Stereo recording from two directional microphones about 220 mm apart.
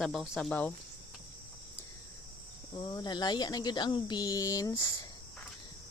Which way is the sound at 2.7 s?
20° left (ahead or behind).